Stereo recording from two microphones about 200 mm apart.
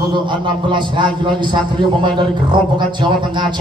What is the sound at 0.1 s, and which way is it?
A man's voice, 25° right (ahead or behind).